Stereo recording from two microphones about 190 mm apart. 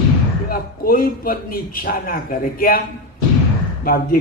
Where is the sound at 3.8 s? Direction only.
50° left (ahead or behind).